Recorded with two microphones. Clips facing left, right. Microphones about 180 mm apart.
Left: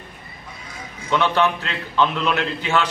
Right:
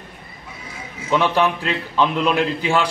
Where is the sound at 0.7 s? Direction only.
5° right (ahead or behind).